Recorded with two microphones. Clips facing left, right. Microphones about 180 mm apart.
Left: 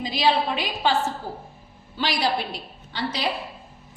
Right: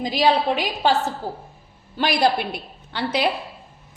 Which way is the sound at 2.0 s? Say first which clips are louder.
Right 5 dB; 55° right (ahead or behind).